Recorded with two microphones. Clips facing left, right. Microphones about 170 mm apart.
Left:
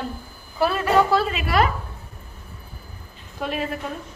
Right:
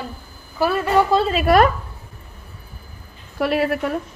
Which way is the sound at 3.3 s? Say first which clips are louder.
Right 8 dB; 80° right.